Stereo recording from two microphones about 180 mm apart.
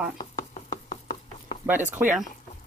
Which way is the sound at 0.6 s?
40° left (ahead or behind).